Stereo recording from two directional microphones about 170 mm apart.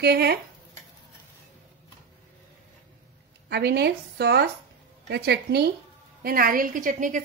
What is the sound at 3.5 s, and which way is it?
Speech, 80° right.